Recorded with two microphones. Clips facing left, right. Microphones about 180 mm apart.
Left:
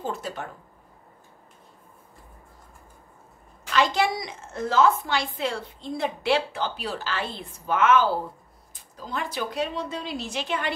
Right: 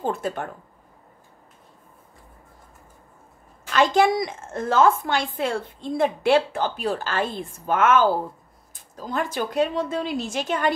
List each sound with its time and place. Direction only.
0.0 s speech: 55° right (ahead or behind)
3.7 s a woman's voice: 50° right (ahead or behind)